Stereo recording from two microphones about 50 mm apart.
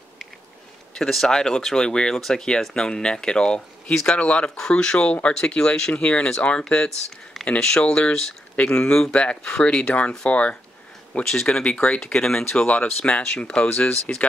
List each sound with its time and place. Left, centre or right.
0.9 s speech: centre; by 6.3 s left
7.6 s speech: centre
11.2 s speech: centre
11.7 s speech: left
12.0 s speech: centre
12.5 s speech: left